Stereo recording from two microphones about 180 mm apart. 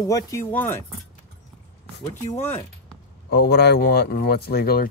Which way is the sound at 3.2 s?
65° left (ahead or behind).